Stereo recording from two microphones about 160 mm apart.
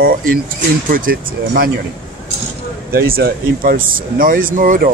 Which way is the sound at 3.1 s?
70° right (ahead or behind).